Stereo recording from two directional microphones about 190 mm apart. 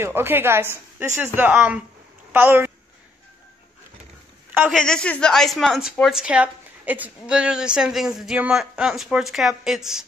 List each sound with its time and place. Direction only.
0.0 s a woman's voice: 10° right (ahead or behind)
4.6 s a woman's voice: centre (ahead or behind)